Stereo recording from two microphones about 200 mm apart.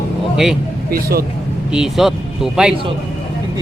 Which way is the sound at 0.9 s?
45° right (ahead or behind).